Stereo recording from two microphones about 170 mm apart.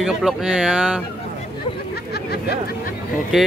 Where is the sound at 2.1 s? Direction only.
70° left (ahead or behind).